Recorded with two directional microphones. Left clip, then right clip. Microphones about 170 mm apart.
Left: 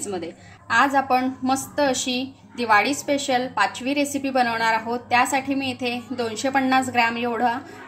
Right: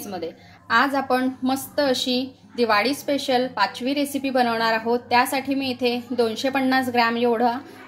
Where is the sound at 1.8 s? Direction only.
Centre (ahead or behind).